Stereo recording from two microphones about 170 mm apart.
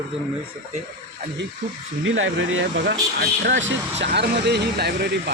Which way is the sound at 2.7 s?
85° right.